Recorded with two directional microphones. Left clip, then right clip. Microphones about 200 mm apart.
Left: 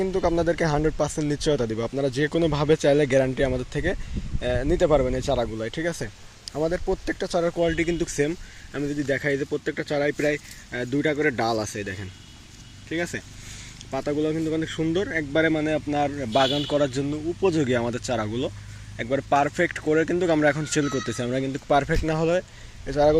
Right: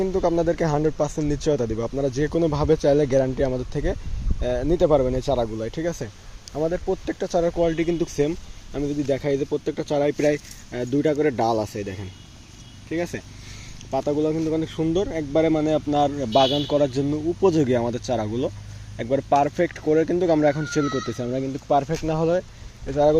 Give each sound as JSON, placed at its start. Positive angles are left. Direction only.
{"t": 0.0, "sound": "speech", "side_deg": 0}
{"t": 10.7, "sound": "speech", "side_deg": 0}
{"t": 17.4, "sound": "speech", "side_deg": -20}
{"t": 17.7, "sound": "speech", "side_deg": -5}